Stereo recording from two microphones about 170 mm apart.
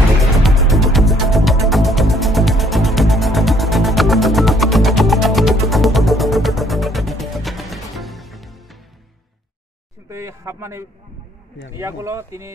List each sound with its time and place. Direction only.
0.2 s music: centre (ahead or behind)
10.0 s a sound: 15° right (ahead or behind)
11.7 s speech: 15° right (ahead or behind)